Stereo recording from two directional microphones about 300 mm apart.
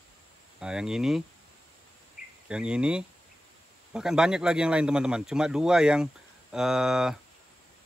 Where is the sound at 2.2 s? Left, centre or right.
Left.